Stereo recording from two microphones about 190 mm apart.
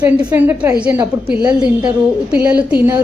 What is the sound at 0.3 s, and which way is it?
A woman's voice, 10° right (ahead or behind).